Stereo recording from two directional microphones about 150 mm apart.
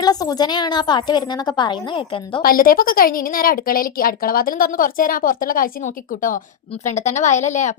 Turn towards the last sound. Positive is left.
turn(degrees=55)  # may be behind; listen again after turning